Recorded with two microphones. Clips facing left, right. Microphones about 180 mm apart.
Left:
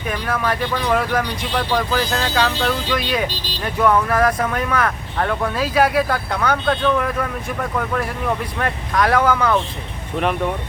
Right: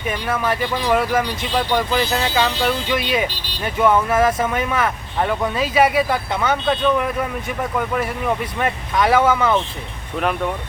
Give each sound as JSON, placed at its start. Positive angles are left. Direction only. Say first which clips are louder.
{"t": 0.1, "sound": "speech", "louder": "even", "side_deg": 0}
{"t": 1.5, "sound": "speech", "louder": "right 1 dB", "side_deg": -15}
{"t": 6.7, "sound": "speech", "louder": "right 1 dB", "side_deg": -15}